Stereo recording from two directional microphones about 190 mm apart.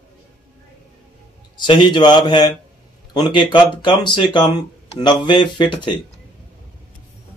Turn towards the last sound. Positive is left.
turn(degrees=25)  # may be behind; listen again after turning